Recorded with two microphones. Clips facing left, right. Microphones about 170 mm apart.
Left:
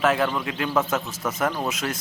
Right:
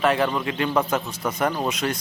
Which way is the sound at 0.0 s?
Centre (ahead or behind).